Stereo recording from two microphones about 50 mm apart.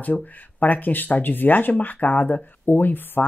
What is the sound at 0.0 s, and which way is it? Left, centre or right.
Speech, left.